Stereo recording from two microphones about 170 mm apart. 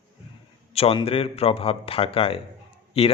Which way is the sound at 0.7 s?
35° left (ahead or behind).